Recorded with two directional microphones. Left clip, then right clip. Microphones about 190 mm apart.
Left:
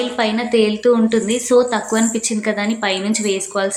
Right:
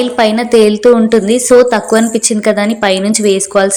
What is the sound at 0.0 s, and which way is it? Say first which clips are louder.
A woman's voice: right 8 dB; 40° right (ahead or behind).